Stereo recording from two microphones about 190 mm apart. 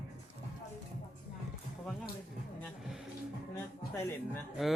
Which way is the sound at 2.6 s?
Centre (ahead or behind).